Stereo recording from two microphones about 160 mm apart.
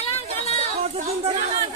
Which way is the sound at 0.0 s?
40° left (ahead or behind).